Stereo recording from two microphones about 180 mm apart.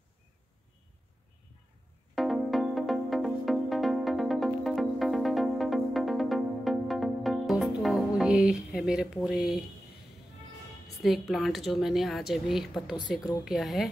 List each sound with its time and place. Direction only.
2.1 s music: centre (ahead or behind)
11.0 s a woman's voice: centre (ahead or behind)